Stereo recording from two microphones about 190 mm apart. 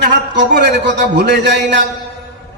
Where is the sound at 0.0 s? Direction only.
65° right (ahead or behind).